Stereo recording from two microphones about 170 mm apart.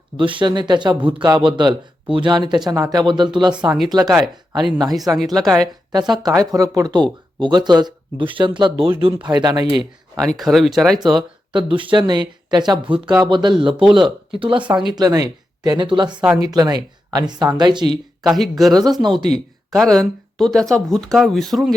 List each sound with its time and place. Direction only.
0.2 s speech: 30° right (ahead or behind)
4.6 s speech: centre (ahead or behind)
5.9 s speech: 25° right (ahead or behind)
10.2 s speech: centre (ahead or behind)
11.5 s speech: 30° right (ahead or behind)
18.2 s speech: centre (ahead or behind)
18.7 s speech: 25° right (ahead or behind)
19.3 s speech: centre (ahead or behind)